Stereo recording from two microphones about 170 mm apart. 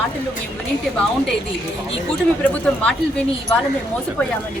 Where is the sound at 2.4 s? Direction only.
5° left (ahead or behind).